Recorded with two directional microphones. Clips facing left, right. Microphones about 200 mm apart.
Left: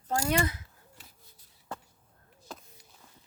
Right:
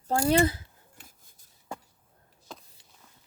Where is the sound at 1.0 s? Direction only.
45° right (ahead or behind).